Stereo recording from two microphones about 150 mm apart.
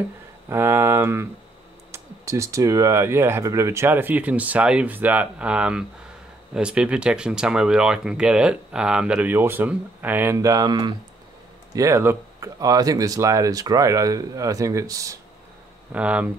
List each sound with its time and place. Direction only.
0.5 s speech: 15° right (ahead or behind)
15.9 s speech: 10° right (ahead or behind)